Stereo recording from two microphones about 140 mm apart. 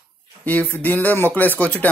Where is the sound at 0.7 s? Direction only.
15° left (ahead or behind).